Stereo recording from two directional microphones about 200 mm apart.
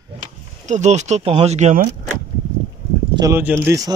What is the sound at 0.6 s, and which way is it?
Speech, 35° right (ahead or behind).